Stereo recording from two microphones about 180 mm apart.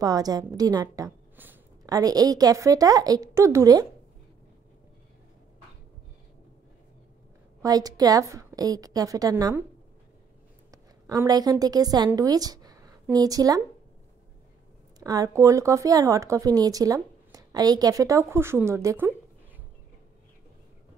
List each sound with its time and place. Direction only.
0.0 s a woman's voice: 20° right (ahead or behind)
7.6 s a woman's voice: 20° right (ahead or behind)
10.7 s a woman's voice: 20° right (ahead or behind)
15.0 s speech: 20° right (ahead or behind)